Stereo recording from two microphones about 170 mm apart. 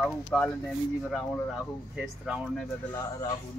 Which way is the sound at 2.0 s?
5° right (ahead or behind).